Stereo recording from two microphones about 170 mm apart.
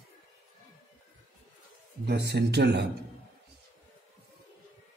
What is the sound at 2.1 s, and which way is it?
Speech, 80° right.